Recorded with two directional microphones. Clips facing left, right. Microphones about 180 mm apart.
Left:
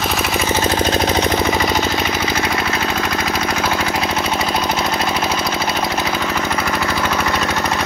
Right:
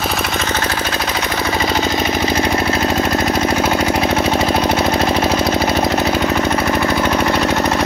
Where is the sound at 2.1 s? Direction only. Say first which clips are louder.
Right 4 dB; 35° right (ahead or behind).